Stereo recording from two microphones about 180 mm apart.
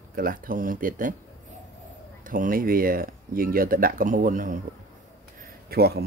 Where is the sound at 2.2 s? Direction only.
50° right (ahead or behind).